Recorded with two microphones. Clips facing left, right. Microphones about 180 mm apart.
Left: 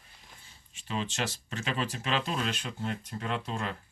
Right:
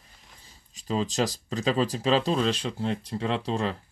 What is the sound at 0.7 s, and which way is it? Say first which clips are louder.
Speech: right 7 dB; 35° right (ahead or behind).